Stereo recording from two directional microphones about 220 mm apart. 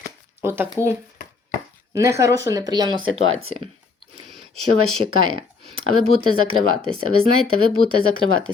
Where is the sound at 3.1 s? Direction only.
65° right (ahead or behind).